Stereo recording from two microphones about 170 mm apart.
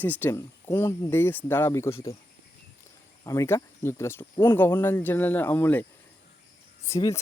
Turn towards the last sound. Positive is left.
turn(degrees=20)  # may be behind; listen again after turning